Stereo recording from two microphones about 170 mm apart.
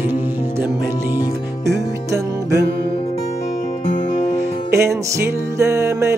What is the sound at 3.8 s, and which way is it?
Music, 40° left (ahead or behind).